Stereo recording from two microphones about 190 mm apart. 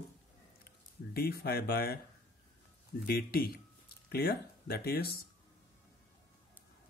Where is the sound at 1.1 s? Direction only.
55° left (ahead or behind).